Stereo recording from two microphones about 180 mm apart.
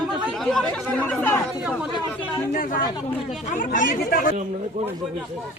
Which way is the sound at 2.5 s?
50° left (ahead or behind).